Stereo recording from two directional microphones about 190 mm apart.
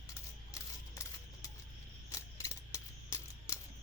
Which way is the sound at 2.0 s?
15° left (ahead or behind).